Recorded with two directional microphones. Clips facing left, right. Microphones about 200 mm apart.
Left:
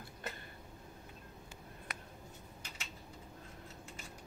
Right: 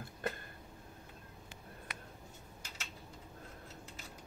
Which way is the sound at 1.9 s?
50° left (ahead or behind).